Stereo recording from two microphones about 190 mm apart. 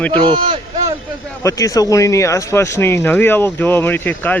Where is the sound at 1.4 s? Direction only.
15° left (ahead or behind).